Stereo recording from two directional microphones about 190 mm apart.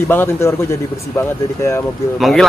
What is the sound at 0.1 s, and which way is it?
Speech, 10° left (ahead or behind).